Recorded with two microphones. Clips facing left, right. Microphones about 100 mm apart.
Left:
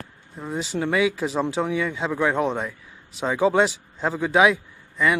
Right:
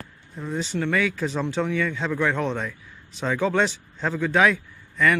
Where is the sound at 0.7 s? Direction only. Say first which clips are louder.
Left 3 dB; 20° left (ahead or behind).